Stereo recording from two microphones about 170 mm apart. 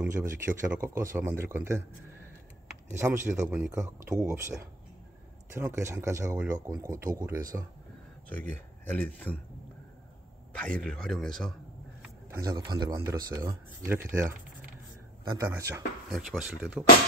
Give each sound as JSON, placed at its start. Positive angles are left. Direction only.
{"t": 0.0, "sound": "speech", "side_deg": -10}
{"t": 2.9, "sound": "speech", "side_deg": -15}
{"t": 8.3, "sound": "speech", "side_deg": 10}
{"t": 10.5, "sound": "a man's voice", "side_deg": 5}
{"t": 12.3, "sound": "a man's voice", "side_deg": -20}
{"t": 15.2, "sound": "a man's voice", "side_deg": -20}
{"t": 16.1, "sound": "a man's voice", "side_deg": 0}